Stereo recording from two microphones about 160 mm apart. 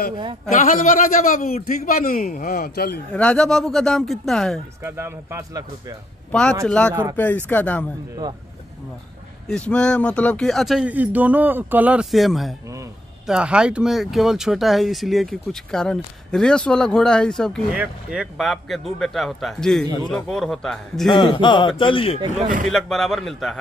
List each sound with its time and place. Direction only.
0.1 s a man's voice: 30° right (ahead or behind)
0.5 s a man's voice: 45° left (ahead or behind)
1.9 s speech: 65° left (ahead or behind); by 3.0 s 80° left
3.1 s speech: 5° left (ahead or behind)
4.8 s speech: 15° right (ahead or behind)
6.6 s speech: 5° left (ahead or behind)
6.9 s speech: 20° right (ahead or behind)
7.2 s speech: 10° left (ahead or behind)
9.5 s speech: 5° left (ahead or behind)
12.6 s a sound: 20° right (ahead or behind)
13.3 s speech: 5° right (ahead or behind)
21.1 s speech: 30° left (ahead or behind)
22.7 s speech: centre (ahead or behind)